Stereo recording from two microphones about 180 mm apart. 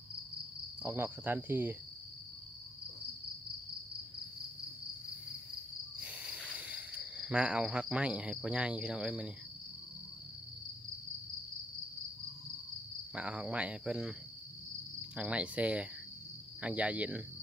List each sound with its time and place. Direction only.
0.8 s speech: 15° right (ahead or behind)
5.9 s insect: 5° right (ahead or behind)
6.5 s cricket: 10° right (ahead or behind)
13.1 s speech: 5° right (ahead or behind)